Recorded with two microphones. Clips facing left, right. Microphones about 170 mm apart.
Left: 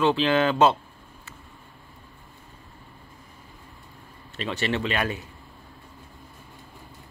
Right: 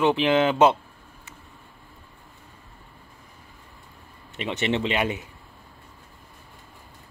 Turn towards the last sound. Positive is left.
turn(degrees=-20)  # may be behind; listen again after turning